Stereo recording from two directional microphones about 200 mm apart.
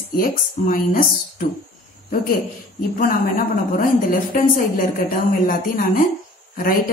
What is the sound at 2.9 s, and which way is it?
A woman's voice, 45° left (ahead or behind).